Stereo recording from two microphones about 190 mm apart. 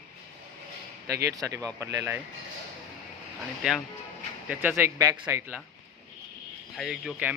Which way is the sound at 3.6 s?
Centre (ahead or behind).